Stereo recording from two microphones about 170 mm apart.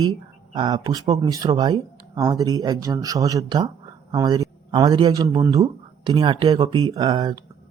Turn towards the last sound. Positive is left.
turn(degrees=-25)  # may be behind; listen again after turning